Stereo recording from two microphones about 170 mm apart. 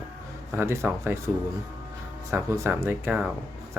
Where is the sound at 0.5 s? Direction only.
15° right (ahead or behind).